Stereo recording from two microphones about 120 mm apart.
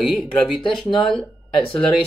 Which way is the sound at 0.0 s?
Centre (ahead or behind).